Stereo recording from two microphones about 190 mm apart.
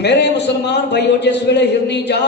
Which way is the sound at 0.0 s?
65° left (ahead or behind).